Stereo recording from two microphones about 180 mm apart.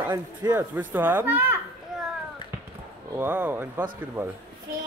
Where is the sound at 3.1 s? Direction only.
10° right (ahead or behind).